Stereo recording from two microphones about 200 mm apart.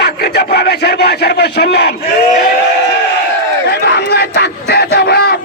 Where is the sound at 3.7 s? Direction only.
55° left (ahead or behind).